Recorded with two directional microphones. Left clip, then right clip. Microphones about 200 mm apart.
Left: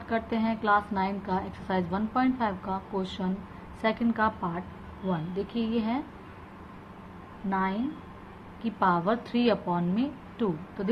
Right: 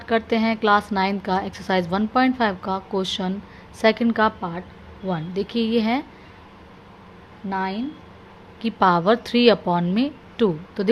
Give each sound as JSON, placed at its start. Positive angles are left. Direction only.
{"t": 0.1, "sound": "a woman's voice", "side_deg": -50}
{"t": 8.6, "sound": "a woman's voice", "side_deg": -55}